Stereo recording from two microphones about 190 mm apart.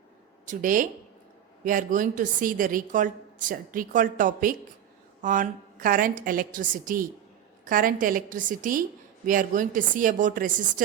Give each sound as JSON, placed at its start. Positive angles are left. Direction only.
{"t": 0.4, "sound": "a woman's voice", "side_deg": -45}